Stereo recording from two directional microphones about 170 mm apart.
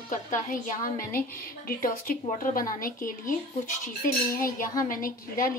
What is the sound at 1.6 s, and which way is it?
A woman's voice, 55° left (ahead or behind).